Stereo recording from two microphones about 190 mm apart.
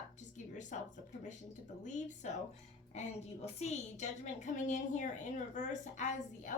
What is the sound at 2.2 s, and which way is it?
A woman's voice, 40° left (ahead or behind).